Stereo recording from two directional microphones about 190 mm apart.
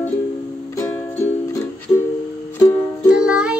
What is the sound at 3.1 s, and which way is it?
Music, 5° right (ahead or behind).